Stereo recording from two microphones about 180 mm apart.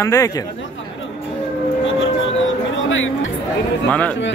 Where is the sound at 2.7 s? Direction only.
90° left.